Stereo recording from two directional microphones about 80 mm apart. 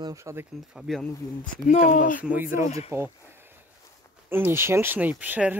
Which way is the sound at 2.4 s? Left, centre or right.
Right.